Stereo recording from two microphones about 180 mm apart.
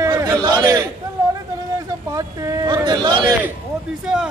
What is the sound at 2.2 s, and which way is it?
Speech, 20° right (ahead or behind).